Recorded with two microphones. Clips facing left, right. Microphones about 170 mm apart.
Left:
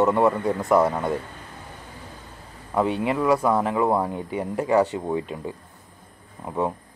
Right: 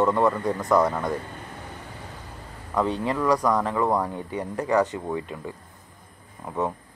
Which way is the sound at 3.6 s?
15° left (ahead or behind).